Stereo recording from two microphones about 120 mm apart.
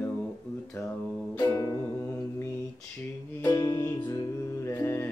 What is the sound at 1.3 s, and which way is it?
Music, 30° left (ahead or behind).